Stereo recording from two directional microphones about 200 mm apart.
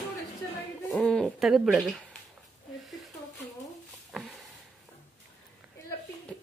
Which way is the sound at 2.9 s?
Centre (ahead or behind).